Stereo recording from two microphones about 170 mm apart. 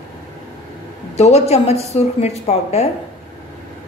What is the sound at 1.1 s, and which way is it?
A woman's voice, 40° left (ahead or behind).